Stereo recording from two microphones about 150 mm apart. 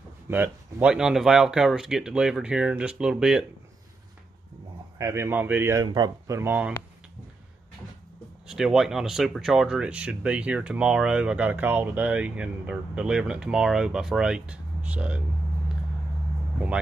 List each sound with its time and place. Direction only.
0.3 s speech: 10° right (ahead or behind)
4.9 s speech: 20° right (ahead or behind)
5.8 s speech: 25° right (ahead or behind)
8.5 s speech: 5° right (ahead or behind)
16.5 s speech: 10° right (ahead or behind)